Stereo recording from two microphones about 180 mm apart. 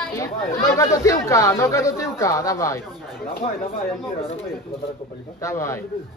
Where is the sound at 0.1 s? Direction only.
15° left (ahead or behind).